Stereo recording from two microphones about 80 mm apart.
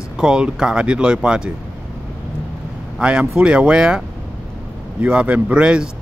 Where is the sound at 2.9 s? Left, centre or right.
Centre.